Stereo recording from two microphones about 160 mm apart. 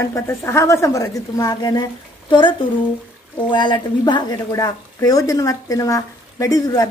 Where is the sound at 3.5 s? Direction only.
30° left (ahead or behind).